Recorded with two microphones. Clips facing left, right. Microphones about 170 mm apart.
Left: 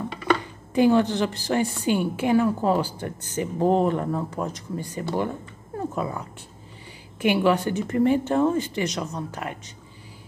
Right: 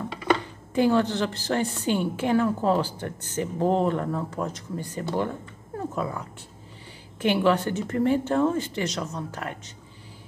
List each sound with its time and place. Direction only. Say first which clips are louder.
0.7 s a woman's voice: left 3 dB; 15° left (ahead or behind)